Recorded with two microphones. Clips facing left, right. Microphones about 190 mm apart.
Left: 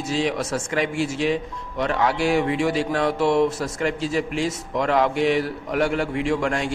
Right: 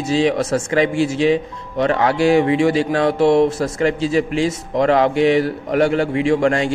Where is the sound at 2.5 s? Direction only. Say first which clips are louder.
Right 6 dB; 90° right.